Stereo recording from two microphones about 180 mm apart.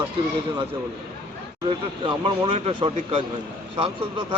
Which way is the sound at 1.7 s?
30° right (ahead or behind).